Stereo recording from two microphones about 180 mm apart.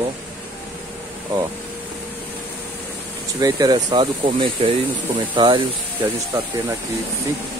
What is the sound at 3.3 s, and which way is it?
Speech, 20° right (ahead or behind).